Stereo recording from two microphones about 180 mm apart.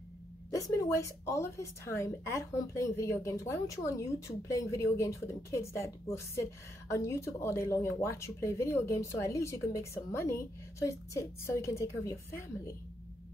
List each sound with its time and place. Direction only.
0.5 s a woman's voice: 15° left (ahead or behind)